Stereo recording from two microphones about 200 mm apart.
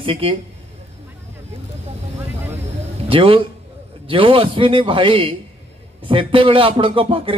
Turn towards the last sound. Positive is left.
turn(degrees=-25)  # may be behind; listen again after turning